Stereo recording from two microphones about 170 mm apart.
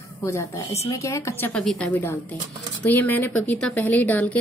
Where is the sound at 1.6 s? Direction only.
Centre (ahead or behind).